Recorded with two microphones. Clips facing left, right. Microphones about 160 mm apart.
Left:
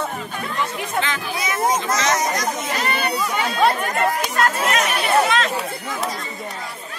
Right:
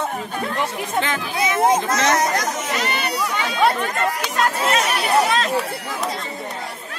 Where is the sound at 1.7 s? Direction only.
60° right (ahead or behind).